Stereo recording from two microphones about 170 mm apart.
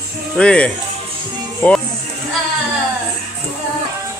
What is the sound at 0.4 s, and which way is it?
Speech, 5° left (ahead or behind).